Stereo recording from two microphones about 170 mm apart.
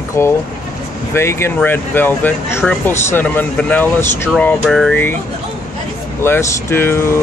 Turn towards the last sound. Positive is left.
turn(degrees=15)  # may be behind; listen again after turning